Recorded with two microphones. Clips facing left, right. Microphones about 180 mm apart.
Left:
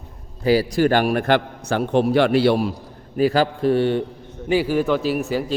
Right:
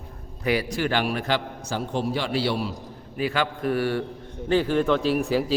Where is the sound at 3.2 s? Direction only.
40° left (ahead or behind).